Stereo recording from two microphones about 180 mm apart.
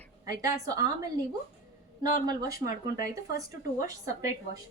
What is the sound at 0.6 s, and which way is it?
A woman's voice, 20° right (ahead or behind).